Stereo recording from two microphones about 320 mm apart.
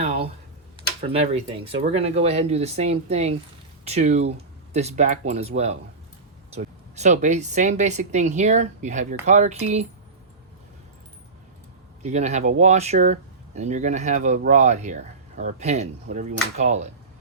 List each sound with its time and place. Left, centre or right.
0.0 s tick-tock: centre
1.0 s speech: centre
12.0 s speech: right